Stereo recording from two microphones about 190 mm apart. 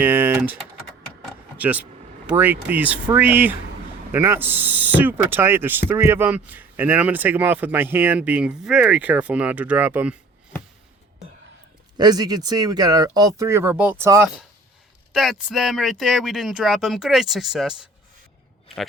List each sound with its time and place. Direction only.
0.0 s speech: 10° right (ahead or behind)
11.9 s speech: 20° right (ahead or behind)
15.1 s speech: centre (ahead or behind)